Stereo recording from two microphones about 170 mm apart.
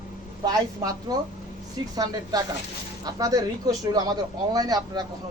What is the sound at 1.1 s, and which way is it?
Speech, 20° right (ahead or behind).